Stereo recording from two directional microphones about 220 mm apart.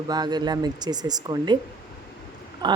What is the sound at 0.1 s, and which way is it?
Speech, 20° right (ahead or behind).